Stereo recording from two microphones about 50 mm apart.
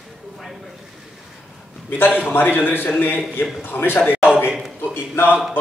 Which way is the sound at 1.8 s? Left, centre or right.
Left.